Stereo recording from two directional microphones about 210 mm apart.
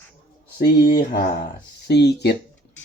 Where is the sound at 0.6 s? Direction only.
50° left (ahead or behind).